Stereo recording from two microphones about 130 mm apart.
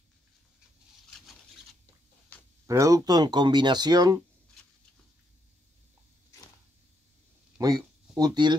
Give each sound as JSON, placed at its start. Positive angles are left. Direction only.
{"t": 2.6, "sound": "speech", "side_deg": -25}
{"t": 8.2, "sound": "speech", "side_deg": -35}